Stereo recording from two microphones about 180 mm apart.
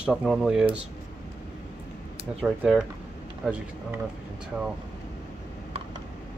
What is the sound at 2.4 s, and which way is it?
Speech, 5° right (ahead or behind).